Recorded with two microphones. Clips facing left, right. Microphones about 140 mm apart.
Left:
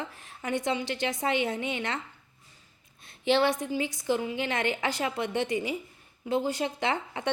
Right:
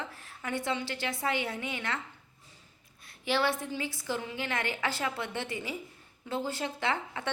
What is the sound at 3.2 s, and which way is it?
A woman's voice, 20° left (ahead or behind).